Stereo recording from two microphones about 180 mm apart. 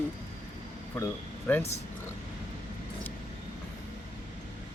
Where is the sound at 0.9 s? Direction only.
10° left (ahead or behind).